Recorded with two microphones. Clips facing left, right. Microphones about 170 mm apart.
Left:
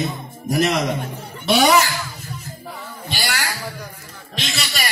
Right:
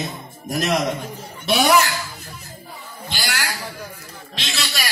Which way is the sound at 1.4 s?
65° left (ahead or behind).